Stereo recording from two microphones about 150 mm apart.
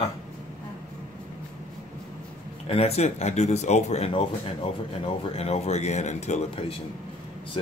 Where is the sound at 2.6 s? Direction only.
40° left (ahead or behind).